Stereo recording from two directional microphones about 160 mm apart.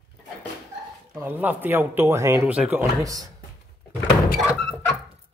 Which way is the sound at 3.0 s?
20° right (ahead or behind).